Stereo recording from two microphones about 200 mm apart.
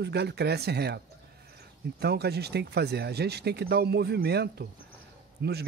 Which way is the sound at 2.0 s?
55° right (ahead or behind).